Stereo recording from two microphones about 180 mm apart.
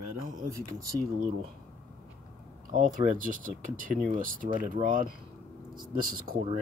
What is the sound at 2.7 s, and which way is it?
Speech, 45° right (ahead or behind).